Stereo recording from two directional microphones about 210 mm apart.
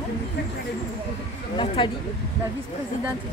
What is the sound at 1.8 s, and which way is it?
Speech, 25° left (ahead or behind).